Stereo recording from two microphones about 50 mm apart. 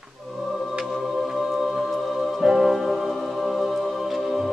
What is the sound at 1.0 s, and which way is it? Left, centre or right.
Music, centre.